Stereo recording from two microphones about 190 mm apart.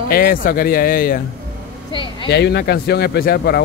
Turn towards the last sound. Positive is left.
turn(degrees=55)  # may be behind; listen again after turning